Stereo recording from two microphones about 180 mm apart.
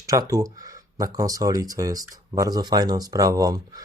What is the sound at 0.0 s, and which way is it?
Speech, 20° right (ahead or behind).